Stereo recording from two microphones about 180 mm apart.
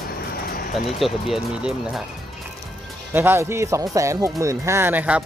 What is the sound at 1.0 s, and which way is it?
Speech, centre (ahead or behind).